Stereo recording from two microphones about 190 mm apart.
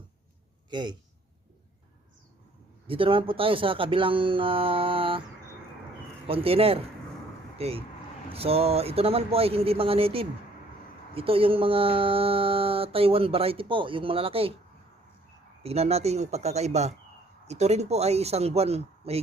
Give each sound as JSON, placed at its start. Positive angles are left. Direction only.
{"t": 0.7, "sound": "speech", "side_deg": -25}
{"t": 2.8, "sound": "speech", "side_deg": -30}
{"t": 6.2, "sound": "speech", "side_deg": -30}
{"t": 15.6, "sound": "speech", "side_deg": -35}